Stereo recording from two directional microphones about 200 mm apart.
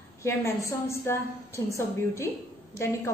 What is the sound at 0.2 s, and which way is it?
A woman's voice, 15° left (ahead or behind).